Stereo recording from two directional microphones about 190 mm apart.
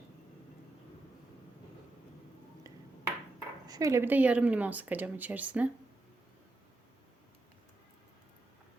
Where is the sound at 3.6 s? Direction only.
15° right (ahead or behind).